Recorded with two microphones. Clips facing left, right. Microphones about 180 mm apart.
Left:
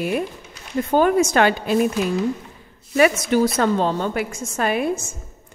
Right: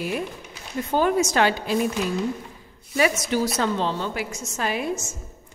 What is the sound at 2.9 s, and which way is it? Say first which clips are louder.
A woman's voice: left 5 dB; 60° left (ahead or behind).